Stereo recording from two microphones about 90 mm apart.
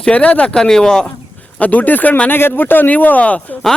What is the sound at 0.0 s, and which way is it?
Speech, 15° left (ahead or behind).